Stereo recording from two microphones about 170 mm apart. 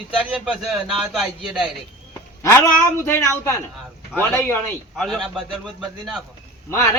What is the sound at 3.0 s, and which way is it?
Speech, 15° left (ahead or behind).